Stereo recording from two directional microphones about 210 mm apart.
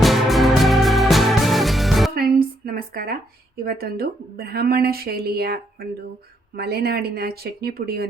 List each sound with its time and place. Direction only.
0.0 s music: centre (ahead or behind)
2.1 s a sound: 45° right (ahead or behind)
3.6 s a woman's voice: 45° right (ahead or behind)
6.6 s a woman's voice: 50° right (ahead or behind)